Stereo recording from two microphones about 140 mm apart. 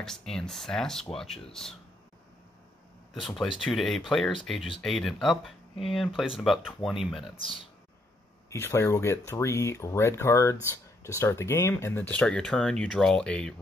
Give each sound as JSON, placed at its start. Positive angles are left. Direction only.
{"t": 0.0, "sound": "speech", "side_deg": 5}
{"t": 3.2, "sound": "speech", "side_deg": 0}
{"t": 7.3, "sound": "speech", "side_deg": 40}
{"t": 8.5, "sound": "speech", "side_deg": 20}